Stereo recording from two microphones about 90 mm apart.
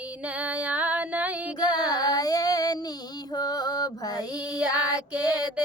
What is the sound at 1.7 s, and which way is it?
Female singing, 50° left (ahead or behind).